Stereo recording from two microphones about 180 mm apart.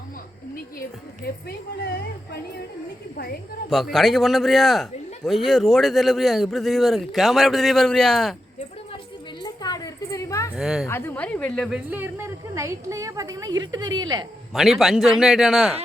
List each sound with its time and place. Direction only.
0.5 s a woman's voice: 55° left (ahead or behind)
3.7 s a man's voice: centre (ahead or behind)
9.4 s a sound: 20° left (ahead or behind)
10.5 s a man's voice: 5° right (ahead or behind)
10.8 s speech: 15° left (ahead or behind)
11.9 s a woman's voice: 10° right (ahead or behind)
14.5 s a man's voice: centre (ahead or behind)